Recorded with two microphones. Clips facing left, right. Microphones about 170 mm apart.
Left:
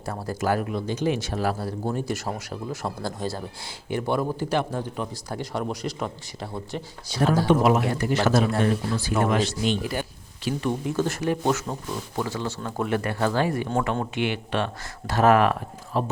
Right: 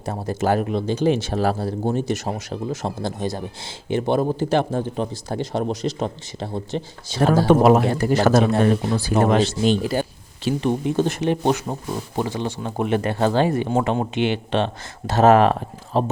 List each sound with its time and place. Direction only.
0.0 s speech: 25° right (ahead or behind)
7.6 s a man's voice: 35° right (ahead or behind)
8.5 s speech: 25° right (ahead or behind)